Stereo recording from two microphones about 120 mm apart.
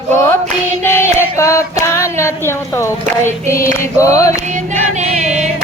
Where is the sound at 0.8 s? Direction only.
20° left (ahead or behind).